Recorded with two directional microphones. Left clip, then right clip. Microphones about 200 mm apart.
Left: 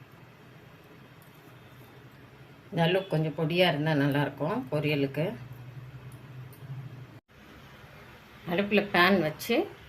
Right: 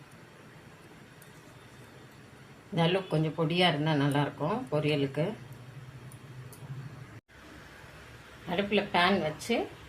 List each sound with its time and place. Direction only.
2.7 s speech: 10° left (ahead or behind)
8.4 s speech: 20° left (ahead or behind)